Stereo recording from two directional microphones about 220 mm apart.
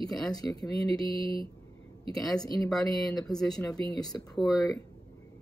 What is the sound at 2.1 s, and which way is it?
Speech, 15° left (ahead or behind).